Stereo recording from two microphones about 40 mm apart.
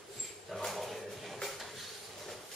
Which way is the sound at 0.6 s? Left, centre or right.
Centre.